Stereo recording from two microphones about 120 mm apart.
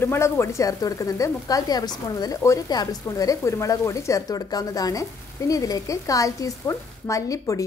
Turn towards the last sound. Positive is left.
turn(degrees=30)  # may be behind; listen again after turning